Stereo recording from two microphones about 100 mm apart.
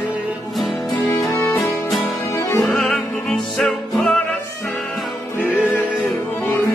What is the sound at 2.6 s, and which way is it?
Music, 5° left (ahead or behind).